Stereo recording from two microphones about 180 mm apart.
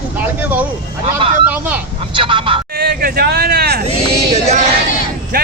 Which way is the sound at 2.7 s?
55° right (ahead or behind).